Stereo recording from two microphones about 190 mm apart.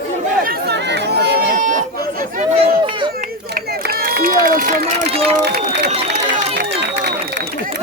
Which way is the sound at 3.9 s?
50° right (ahead or behind).